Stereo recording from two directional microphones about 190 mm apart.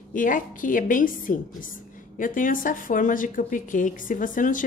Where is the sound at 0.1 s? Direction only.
45° left (ahead or behind).